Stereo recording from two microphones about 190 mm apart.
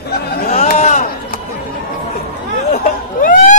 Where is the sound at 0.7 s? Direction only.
40° left (ahead or behind).